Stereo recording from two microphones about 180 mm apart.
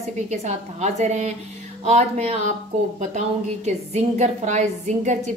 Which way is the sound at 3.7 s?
40° right (ahead or behind).